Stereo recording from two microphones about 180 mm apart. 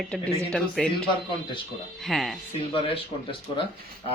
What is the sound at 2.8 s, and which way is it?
Speech, 30° left (ahead or behind).